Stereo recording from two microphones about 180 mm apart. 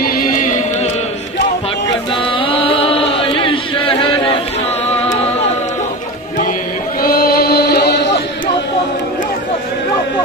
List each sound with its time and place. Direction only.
0.0 s music: 50° left (ahead or behind)
2.3 s chant: 30° left (ahead or behind)
4.8 s music: 35° left (ahead or behind)
7.0 s a sound: 55° left (ahead or behind)